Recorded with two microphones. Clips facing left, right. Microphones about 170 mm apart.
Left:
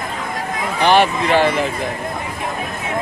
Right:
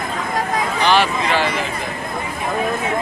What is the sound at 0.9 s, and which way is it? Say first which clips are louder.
Speech: left 4 dB; 55° left (ahead or behind).